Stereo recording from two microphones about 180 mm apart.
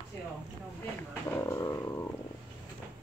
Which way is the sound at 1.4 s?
15° left (ahead or behind).